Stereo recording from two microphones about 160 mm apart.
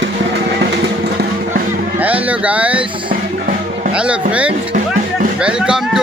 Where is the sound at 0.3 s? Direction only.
90° right.